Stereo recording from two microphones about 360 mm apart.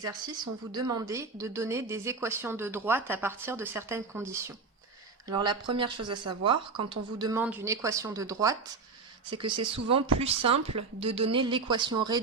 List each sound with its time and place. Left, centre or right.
0.7 s speech: centre